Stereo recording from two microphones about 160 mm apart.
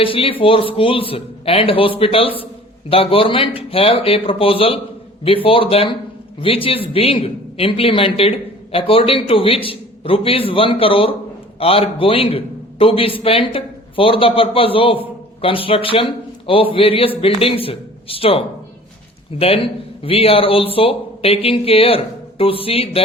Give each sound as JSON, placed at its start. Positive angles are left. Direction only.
{"t": 0.0, "sound": "a man's voice", "side_deg": 35}